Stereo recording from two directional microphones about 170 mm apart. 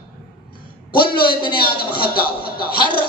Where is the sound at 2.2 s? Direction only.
65° left (ahead or behind).